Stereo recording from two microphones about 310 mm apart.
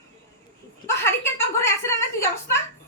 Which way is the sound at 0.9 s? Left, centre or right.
Centre.